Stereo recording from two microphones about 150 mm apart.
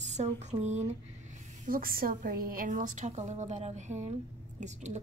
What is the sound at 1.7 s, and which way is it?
A woman's voice, 75° right (ahead or behind).